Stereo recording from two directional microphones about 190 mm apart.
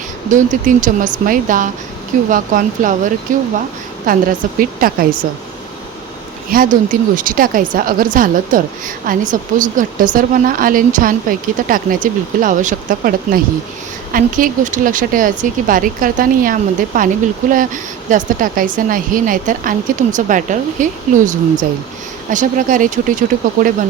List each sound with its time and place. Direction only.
0.3 s speech: 40° right (ahead or behind)
6.5 s speech: 45° right (ahead or behind)
18.1 s speech: 45° right (ahead or behind)